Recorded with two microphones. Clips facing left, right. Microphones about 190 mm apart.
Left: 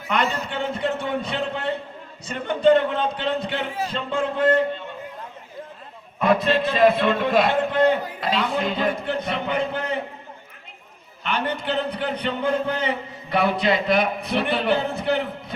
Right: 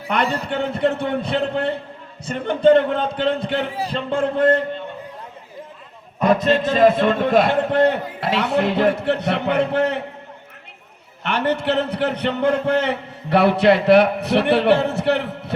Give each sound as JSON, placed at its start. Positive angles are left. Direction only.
{"t": 0.4, "sound": "a man's voice", "side_deg": -60}
{"t": 6.1, "sound": "a man's voice", "side_deg": -40}
{"t": 11.2, "sound": "a man's voice", "side_deg": -70}